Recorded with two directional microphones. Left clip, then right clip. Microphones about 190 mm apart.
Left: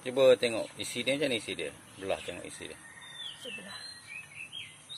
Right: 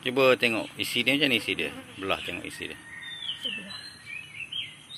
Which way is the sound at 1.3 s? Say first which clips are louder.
Right 8 dB; 50° right (ahead or behind).